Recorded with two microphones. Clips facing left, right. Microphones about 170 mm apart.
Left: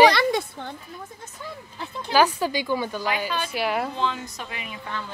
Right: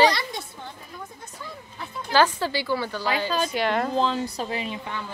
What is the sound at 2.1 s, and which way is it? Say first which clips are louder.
A woman's voice: left 1 dB; 15° left (ahead or behind).